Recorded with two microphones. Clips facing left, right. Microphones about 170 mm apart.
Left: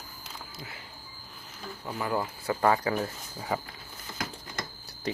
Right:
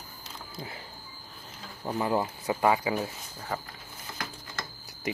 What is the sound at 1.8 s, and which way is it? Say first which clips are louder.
Speech: right 3 dB; 25° right (ahead or behind).